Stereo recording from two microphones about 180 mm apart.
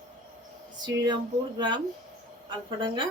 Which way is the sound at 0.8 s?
25° right (ahead or behind).